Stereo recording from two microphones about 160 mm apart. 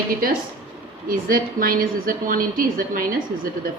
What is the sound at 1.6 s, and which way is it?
A woman's voice, 65° right (ahead or behind).